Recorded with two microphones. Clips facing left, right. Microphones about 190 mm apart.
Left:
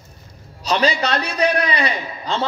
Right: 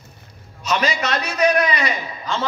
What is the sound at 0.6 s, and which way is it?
A man's voice, 35° left (ahead or behind).